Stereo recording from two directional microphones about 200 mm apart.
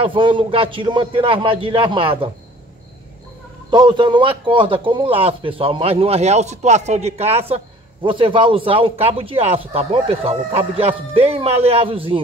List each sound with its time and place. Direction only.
0.0 s a man's voice: 25° right (ahead or behind)
3.7 s a man's voice: 20° right (ahead or behind)